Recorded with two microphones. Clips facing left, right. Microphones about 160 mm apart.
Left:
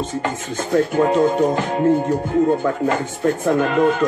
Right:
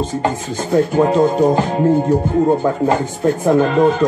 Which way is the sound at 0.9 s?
35° right (ahead or behind).